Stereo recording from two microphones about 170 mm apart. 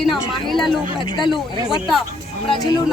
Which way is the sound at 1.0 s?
25° left (ahead or behind).